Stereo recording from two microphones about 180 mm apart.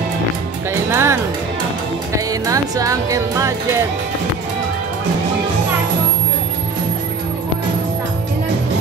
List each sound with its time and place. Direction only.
0.7 s music: 15° right (ahead or behind)